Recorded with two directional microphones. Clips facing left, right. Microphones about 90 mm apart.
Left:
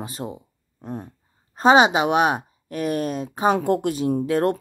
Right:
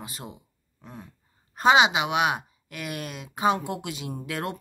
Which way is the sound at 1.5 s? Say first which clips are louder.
Left 4 dB; 35° left (ahead or behind).